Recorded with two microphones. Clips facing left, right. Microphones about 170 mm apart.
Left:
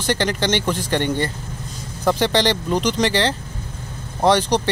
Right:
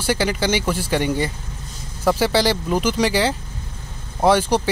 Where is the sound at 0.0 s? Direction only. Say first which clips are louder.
Even; 10° right (ahead or behind).